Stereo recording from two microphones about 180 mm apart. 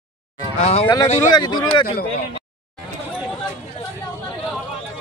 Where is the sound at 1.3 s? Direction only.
25° left (ahead or behind).